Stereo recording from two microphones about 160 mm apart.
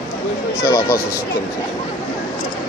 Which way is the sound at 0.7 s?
20° left (ahead or behind).